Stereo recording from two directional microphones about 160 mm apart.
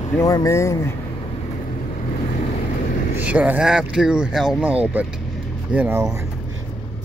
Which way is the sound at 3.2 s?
10° right (ahead or behind).